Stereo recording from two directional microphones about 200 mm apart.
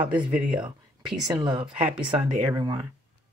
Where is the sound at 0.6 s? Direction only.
Centre (ahead or behind).